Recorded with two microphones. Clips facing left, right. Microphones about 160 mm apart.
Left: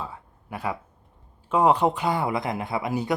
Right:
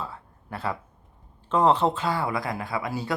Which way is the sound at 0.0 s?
15° left (ahead or behind).